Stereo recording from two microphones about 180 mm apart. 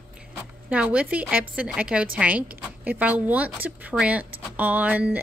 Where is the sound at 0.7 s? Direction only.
5° right (ahead or behind).